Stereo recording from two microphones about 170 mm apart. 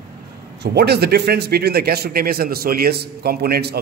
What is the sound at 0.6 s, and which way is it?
A man's voice, 75° right (ahead or behind).